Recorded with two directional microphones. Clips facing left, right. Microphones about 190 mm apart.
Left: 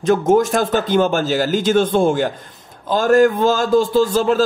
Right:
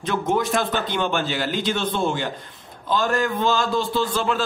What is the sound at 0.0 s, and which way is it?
A man's voice, 45° left (ahead or behind).